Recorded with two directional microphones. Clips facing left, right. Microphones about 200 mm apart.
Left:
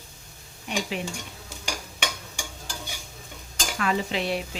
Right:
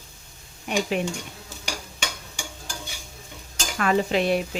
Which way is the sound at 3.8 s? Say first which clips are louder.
Right 5 dB; 50° right (ahead or behind).